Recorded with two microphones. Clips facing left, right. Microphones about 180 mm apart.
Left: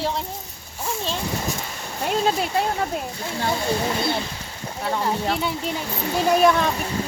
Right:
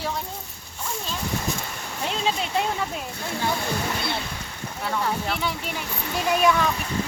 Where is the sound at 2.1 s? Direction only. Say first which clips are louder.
Left 6 dB; 45° left (ahead or behind).